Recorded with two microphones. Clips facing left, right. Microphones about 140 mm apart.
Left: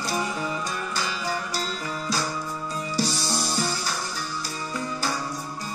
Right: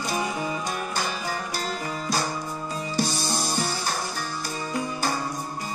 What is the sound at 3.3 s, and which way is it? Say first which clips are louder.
Music: even; 50° right (ahead or behind).